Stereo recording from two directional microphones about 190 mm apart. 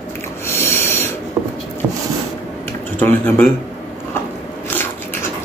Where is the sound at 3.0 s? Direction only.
10° left (ahead or behind).